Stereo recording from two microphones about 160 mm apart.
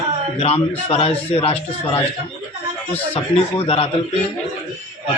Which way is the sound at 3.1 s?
35° left (ahead or behind).